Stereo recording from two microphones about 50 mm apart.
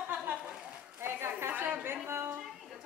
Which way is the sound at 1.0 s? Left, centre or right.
Right.